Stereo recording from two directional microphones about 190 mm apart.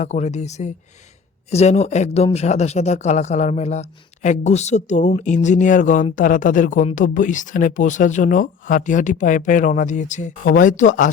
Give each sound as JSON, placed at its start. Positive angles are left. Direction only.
{"t": 0.0, "sound": "speech", "side_deg": 35}